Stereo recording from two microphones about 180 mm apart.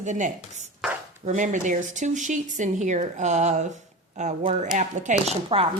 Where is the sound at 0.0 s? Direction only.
45° right (ahead or behind).